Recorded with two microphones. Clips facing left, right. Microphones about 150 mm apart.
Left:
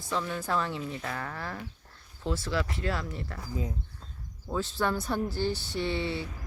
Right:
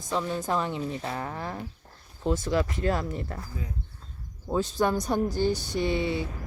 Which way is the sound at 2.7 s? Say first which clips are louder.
Right 5 dB; 45° right (ahead or behind).